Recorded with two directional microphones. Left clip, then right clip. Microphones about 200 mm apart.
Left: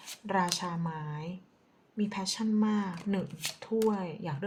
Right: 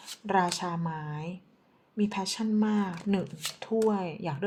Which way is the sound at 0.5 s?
30° right (ahead or behind).